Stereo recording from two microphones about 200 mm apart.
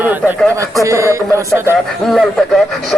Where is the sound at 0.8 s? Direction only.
15° right (ahead or behind).